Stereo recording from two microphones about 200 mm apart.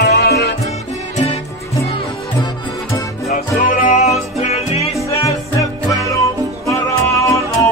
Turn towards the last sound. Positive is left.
turn(degrees=15)  # may be behind; listen again after turning